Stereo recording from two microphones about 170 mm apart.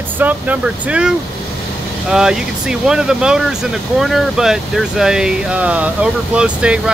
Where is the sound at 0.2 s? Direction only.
10° right (ahead or behind).